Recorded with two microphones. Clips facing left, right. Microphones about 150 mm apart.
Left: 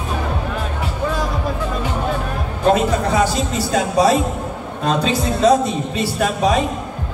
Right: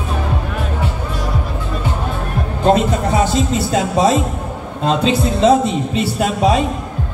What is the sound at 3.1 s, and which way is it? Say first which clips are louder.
Music: right 2 dB; 25° right (ahead or behind).